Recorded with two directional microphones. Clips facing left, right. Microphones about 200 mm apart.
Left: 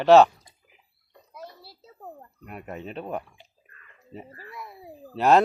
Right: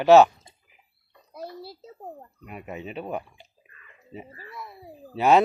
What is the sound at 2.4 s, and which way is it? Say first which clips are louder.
Speech: even; 5° right (ahead or behind).